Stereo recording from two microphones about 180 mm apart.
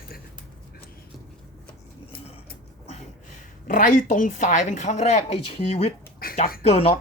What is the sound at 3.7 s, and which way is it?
Speech, 50° left (ahead or behind).